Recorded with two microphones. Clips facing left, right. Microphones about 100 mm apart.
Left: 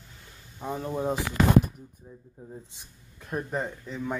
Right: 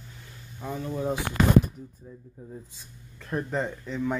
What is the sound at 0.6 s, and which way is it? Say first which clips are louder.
Speech: left 1 dB; 30° left (ahead or behind).